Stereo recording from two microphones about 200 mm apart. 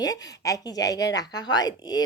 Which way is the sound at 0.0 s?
15° left (ahead or behind).